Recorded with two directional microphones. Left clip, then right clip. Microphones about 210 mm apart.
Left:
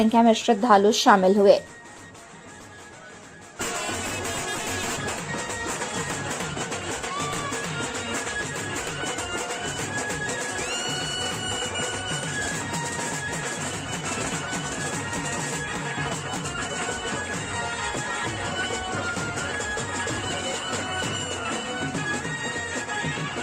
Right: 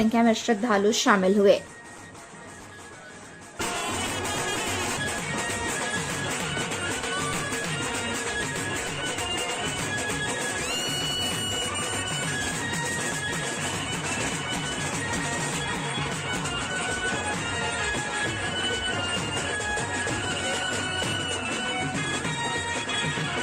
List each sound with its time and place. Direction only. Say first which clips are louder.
0.0 s speech: left 4 dB; 10° left (ahead or behind)